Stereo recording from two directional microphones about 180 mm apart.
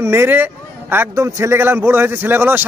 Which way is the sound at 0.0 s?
15° right (ahead or behind).